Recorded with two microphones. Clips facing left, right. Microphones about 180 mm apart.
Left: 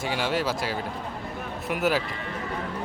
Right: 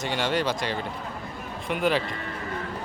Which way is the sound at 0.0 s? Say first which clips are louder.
Right 1 dB; 5° left (ahead or behind).